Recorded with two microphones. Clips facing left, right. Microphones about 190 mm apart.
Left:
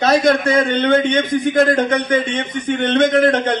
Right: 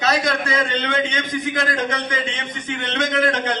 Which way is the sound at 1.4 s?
30° left (ahead or behind).